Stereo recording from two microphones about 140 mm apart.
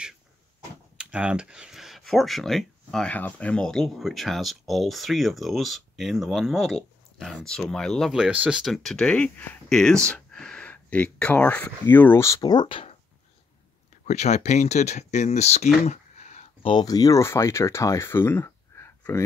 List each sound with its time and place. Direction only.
0.9 s speech: 5° right (ahead or behind); by 12.9 s 40° left (ahead or behind)
14.0 s speech: 55° left (ahead or behind)
16.6 s speech: 30° left (ahead or behind)